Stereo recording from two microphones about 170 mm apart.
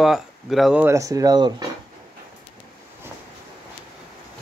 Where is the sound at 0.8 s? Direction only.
20° right (ahead or behind).